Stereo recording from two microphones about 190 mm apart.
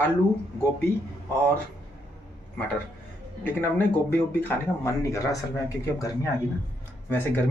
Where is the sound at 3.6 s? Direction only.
10° left (ahead or behind).